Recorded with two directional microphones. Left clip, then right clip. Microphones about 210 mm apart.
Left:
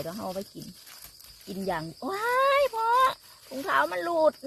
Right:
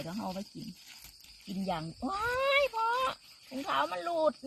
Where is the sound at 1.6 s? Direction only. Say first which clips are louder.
Left 4 dB; 25° left (ahead or behind).